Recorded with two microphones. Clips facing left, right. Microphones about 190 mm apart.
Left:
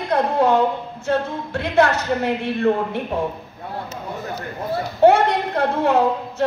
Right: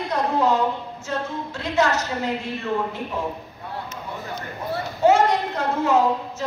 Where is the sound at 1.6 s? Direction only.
60° left (ahead or behind).